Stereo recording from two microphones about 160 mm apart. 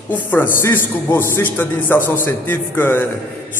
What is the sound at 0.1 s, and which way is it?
A man's voice, 10° left (ahead or behind).